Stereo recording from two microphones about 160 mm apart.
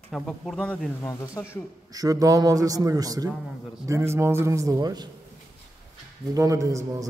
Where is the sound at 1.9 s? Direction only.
20° right (ahead or behind).